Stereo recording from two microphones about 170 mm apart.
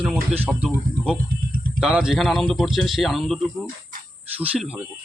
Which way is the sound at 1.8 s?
5° right (ahead or behind).